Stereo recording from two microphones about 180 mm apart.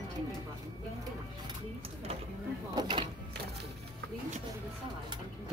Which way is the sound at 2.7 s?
25° right (ahead or behind).